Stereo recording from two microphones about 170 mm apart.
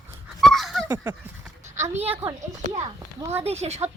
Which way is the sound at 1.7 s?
15° right (ahead or behind).